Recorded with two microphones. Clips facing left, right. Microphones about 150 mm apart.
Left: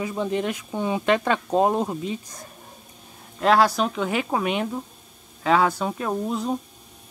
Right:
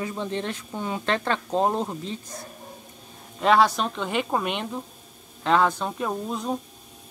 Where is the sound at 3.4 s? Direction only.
Centre (ahead or behind).